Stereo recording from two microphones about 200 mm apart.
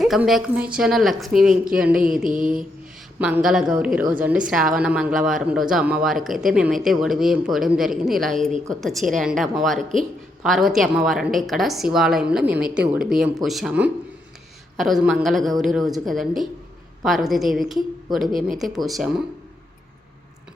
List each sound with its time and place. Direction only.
0.0 s speech: centre (ahead or behind)
2.3 s mantra: 40° right (ahead or behind)
3.2 s speech: 5° right (ahead or behind)